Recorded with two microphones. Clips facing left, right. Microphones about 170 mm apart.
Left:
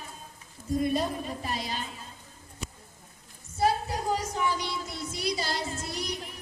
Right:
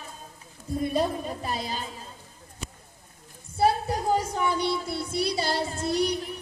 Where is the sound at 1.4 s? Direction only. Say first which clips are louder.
Right 2 dB; 35° right (ahead or behind).